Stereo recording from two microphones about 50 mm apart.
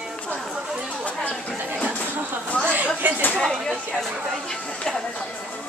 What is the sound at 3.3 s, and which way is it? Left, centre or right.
Speech, centre.